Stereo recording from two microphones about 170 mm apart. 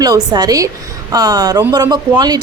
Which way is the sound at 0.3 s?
20° right (ahead or behind).